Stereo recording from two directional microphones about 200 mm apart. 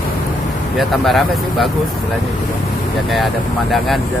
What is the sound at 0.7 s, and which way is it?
Speech, centre (ahead or behind).